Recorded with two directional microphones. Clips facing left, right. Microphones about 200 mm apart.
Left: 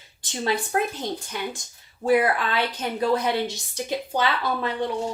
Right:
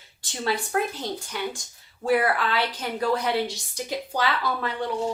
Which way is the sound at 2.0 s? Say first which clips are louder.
Left 2 dB; 20° left (ahead or behind).